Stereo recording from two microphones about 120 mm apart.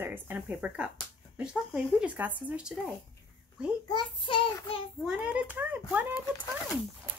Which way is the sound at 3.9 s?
45° left (ahead or behind).